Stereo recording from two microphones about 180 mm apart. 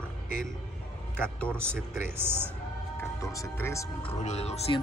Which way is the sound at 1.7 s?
10° right (ahead or behind).